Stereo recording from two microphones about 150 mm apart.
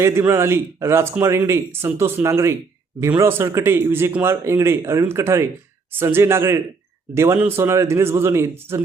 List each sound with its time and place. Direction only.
0.0 s speech: 20° right (ahead or behind)